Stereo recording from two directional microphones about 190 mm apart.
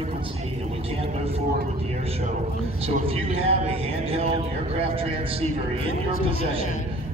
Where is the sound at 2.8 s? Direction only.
30° right (ahead or behind).